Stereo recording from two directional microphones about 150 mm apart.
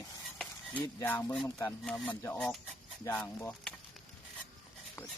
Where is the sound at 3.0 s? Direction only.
20° left (ahead or behind).